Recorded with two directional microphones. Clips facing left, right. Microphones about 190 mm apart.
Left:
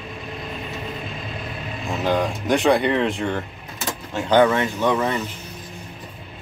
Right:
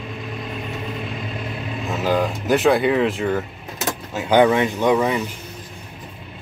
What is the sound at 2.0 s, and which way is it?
Speech, 5° right (ahead or behind).